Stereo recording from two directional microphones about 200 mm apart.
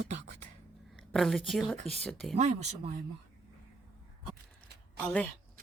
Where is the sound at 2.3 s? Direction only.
35° right (ahead or behind).